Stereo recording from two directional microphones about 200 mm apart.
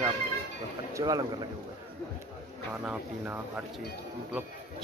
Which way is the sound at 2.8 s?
10° right (ahead or behind).